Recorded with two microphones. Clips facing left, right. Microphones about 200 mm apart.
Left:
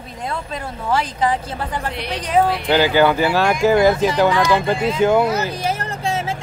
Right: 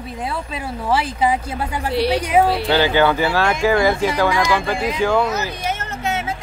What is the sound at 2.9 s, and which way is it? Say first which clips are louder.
Speech: left 1 dB; 15° left (ahead or behind).